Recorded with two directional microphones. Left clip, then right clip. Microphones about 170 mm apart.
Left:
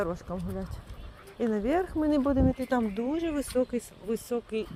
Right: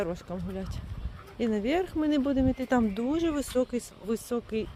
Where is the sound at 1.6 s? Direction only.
20° right (ahead or behind).